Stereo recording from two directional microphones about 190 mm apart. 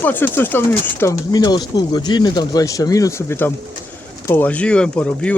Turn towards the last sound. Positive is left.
turn(degrees=5)  # may be behind; listen again after turning